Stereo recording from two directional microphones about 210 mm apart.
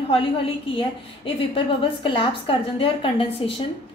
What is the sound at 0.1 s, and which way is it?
A woman's voice, 25° left (ahead or behind).